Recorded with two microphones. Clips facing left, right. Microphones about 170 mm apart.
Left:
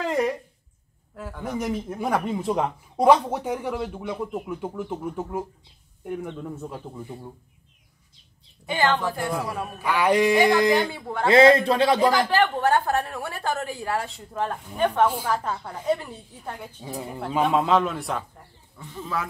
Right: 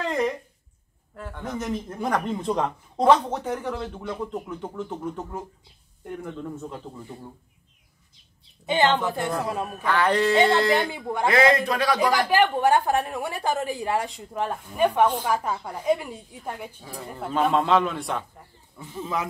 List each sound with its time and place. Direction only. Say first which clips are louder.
0.0 s a sound: left 1 dB; 10° left (ahead or behind)
1.1 s speech: left 2 dB; 5° left (ahead or behind)
6.6 s speech: left 1 dB; 10° left (ahead or behind)
8.6 s a woman's voice: right 2 dB; 25° right (ahead or behind)
9.8 s speech: left 2 dB; 10° left (ahead or behind)
10.8 s a woman's voice: even; 15° right (ahead or behind)
11.2 s a man's voice: left 5 dB; 25° left (ahead or behind)
12.3 s a woman's voice: right 1 dB; 10° right (ahead or behind)
16.8 s a man's voice: left 4 dB; 20° left (ahead or behind)
17.2 s a man's voice: even; centre (ahead or behind)
18.9 s a woman's voice: right 1 dB; 20° right (ahead or behind)